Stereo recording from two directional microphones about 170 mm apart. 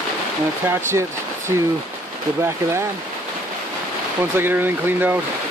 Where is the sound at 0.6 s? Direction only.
15° right (ahead or behind).